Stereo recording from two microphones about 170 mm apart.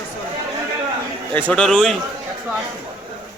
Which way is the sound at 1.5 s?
5° left (ahead or behind).